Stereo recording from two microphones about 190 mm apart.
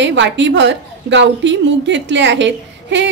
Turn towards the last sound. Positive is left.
turn(degrees=-70)  # may be behind; listen again after turning